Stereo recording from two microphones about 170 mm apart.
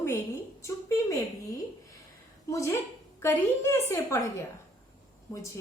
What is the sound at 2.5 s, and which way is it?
A woman's voice, 15° left (ahead or behind).